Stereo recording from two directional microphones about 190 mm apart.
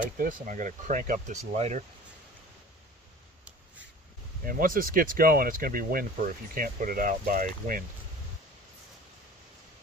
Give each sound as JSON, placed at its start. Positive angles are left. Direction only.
{"t": 0.2, "sound": "speech", "side_deg": -45}
{"t": 4.5, "sound": "speech", "side_deg": -50}